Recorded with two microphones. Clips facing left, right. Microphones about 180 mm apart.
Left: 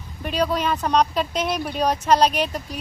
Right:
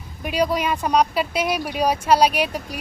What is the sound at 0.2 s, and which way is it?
Speech, 10° right (ahead or behind).